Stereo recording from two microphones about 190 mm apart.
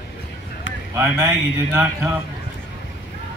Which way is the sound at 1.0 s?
15° right (ahead or behind).